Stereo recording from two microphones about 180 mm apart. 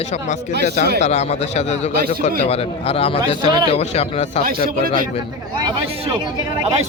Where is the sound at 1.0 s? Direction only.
35° left (ahead or behind).